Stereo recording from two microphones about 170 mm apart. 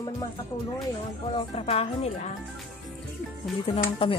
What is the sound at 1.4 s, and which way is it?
Speech, 35° left (ahead or behind).